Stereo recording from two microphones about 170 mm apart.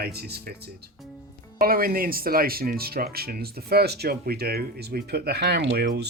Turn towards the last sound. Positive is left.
turn(degrees=-70)  # may be behind; listen again after turning